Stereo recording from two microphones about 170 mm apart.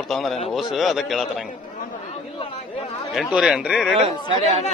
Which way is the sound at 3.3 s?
5° right (ahead or behind).